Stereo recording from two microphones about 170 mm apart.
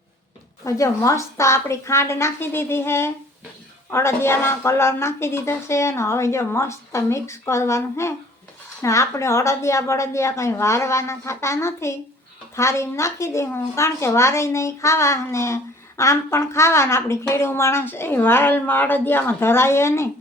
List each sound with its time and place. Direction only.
0.6 s a woman's voice: 20° left (ahead or behind)